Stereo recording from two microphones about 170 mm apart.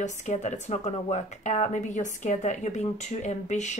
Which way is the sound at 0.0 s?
45° left (ahead or behind).